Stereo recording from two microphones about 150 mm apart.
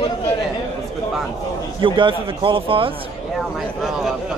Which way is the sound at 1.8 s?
35° right (ahead or behind).